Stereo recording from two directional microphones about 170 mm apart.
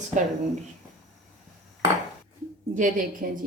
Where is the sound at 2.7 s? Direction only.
50° right (ahead or behind).